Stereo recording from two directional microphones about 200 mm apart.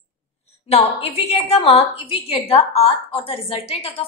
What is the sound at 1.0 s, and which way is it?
A woman's voice, 30° left (ahead or behind).